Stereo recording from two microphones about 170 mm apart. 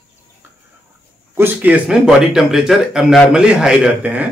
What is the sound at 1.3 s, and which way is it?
Speech, 10° right (ahead or behind).